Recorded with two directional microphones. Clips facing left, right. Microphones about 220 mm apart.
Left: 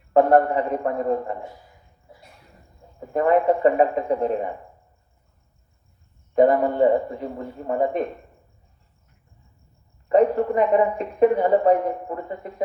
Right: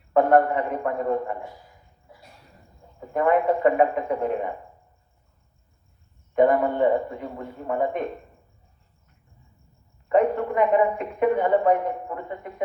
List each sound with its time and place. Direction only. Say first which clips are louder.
0.1 s a woman's voice: left 2 dB; 35° left (ahead or behind)
3.1 s a woman's voice: left 2 dB; 35° left (ahead or behind)
6.3 s a woman's voice: left 2 dB; 35° left (ahead or behind)
10.1 s a woman's voice: left 3 dB; 35° left (ahead or behind)